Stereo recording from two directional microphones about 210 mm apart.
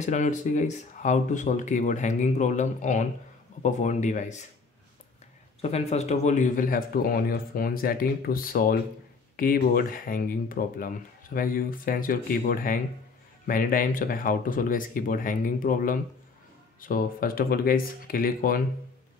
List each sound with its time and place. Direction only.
0.0 s speech: 35° left (ahead or behind)
5.6 s speech: 30° left (ahead or behind)